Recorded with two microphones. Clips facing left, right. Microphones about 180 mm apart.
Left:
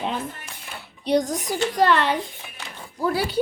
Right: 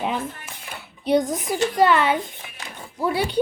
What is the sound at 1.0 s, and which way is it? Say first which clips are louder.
A woman's voice: right 1 dB; centre (ahead or behind).